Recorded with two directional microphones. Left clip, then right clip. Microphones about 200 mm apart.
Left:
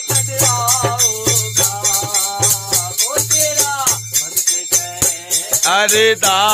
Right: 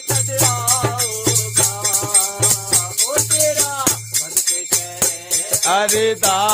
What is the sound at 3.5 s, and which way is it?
Music, 30° right (ahead or behind).